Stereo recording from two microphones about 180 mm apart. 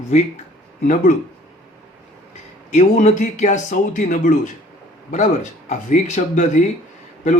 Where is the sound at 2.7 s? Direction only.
40° left (ahead or behind).